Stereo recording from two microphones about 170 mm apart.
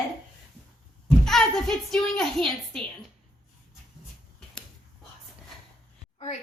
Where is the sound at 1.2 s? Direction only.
5° left (ahead or behind).